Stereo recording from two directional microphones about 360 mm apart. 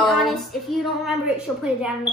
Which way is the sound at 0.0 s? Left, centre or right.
Centre.